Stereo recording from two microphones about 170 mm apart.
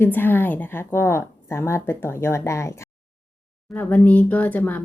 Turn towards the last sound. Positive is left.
turn(degrees=10)  # may be behind; listen again after turning